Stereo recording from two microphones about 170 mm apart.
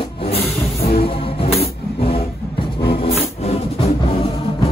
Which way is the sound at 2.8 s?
35° left (ahead or behind).